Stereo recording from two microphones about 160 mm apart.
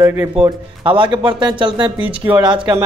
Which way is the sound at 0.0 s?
15° right (ahead or behind).